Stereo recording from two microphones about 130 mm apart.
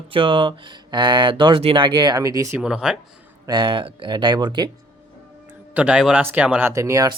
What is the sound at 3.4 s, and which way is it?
Speech, 35° right (ahead or behind).